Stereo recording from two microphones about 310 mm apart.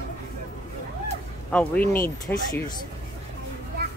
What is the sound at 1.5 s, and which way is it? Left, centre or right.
Speech, centre.